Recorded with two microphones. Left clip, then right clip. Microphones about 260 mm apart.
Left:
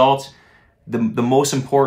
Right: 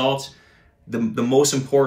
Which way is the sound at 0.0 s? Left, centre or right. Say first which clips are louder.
Left 7 dB; left.